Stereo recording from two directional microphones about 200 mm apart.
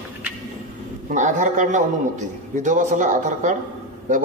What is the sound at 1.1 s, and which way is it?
A man's voice, 40° right (ahead or behind).